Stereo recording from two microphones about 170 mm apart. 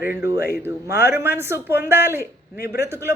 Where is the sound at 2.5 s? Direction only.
65° left (ahead or behind).